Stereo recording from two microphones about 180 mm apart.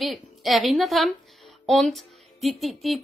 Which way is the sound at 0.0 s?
Centre (ahead or behind).